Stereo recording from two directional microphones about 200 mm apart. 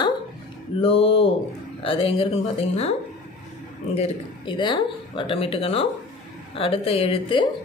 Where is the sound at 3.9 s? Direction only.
25° left (ahead or behind).